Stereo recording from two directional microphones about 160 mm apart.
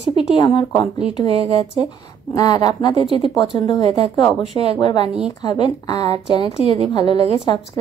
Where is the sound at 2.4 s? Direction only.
25° left (ahead or behind).